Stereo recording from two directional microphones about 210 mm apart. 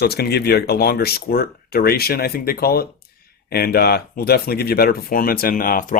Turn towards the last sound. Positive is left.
turn(degrees=40)  # may be behind; listen again after turning